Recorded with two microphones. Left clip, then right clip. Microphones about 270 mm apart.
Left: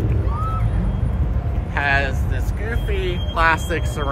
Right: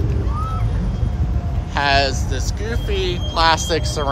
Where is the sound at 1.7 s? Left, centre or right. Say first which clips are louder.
Right 3 dB; centre.